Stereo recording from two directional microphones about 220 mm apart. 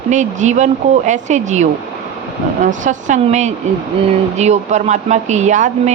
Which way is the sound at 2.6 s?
35° right (ahead or behind).